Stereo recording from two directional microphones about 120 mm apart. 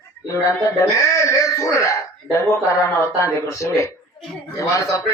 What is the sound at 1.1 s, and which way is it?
Speech, 25° left (ahead or behind).